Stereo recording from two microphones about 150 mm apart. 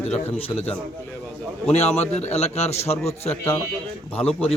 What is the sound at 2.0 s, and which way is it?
A man's voice, 45° left (ahead or behind).